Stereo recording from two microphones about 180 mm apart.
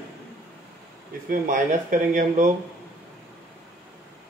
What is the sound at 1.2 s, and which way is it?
A man's voice, 45° right (ahead or behind).